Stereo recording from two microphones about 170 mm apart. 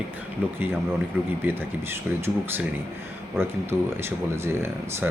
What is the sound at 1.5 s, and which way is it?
Speech, 15° right (ahead or behind).